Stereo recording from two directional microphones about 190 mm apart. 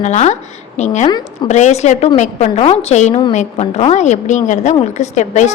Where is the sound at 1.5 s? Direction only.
40° left (ahead or behind).